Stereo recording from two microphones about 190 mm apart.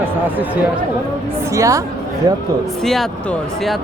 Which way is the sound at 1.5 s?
15° right (ahead or behind).